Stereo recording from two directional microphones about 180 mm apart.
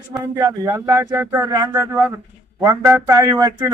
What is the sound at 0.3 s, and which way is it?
Speech, 20° right (ahead or behind).